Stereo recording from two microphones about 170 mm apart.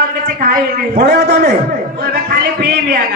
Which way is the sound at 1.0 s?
75° right (ahead or behind).